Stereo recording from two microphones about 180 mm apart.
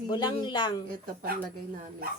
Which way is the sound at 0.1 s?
25° left (ahead or behind).